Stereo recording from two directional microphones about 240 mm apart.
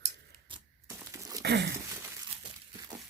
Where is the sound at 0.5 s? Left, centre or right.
Centre.